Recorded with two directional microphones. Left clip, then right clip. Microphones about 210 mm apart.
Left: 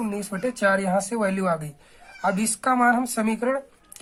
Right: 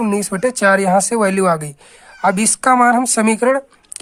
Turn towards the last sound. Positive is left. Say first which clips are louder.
# right 10 dB
turn(degrees=-45)  # may be behind; listen again after turning